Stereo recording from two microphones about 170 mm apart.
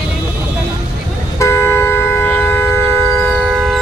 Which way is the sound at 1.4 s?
15° left (ahead or behind).